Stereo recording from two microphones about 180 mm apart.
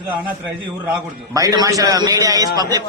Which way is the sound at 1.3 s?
20° right (ahead or behind).